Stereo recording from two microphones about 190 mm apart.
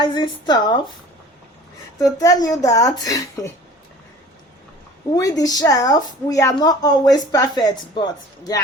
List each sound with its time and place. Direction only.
0.0 s a woman's voice: 20° left (ahead or behind)
2.1 s a woman's voice: 20° left (ahead or behind)
5.1 s a woman's voice: 20° left (ahead or behind)